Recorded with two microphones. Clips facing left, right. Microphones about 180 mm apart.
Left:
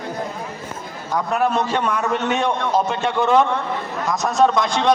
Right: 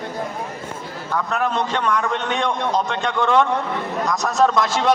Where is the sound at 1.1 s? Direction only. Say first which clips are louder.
Left 3 dB; 10° left (ahead or behind).